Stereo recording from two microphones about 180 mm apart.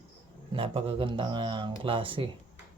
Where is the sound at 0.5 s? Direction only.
30° right (ahead or behind).